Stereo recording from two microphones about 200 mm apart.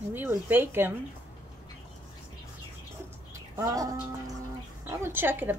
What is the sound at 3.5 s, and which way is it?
Bird, 15° right (ahead or behind).